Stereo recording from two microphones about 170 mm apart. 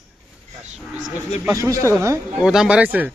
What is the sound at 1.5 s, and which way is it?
Speech, 20° right (ahead or behind).